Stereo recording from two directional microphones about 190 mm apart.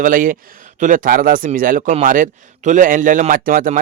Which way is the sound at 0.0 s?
45° right (ahead or behind).